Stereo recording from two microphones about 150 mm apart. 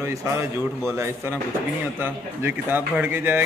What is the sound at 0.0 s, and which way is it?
A man's voice, 20° right (ahead or behind).